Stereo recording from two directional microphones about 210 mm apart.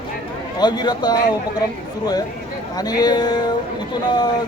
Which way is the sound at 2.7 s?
20° left (ahead or behind).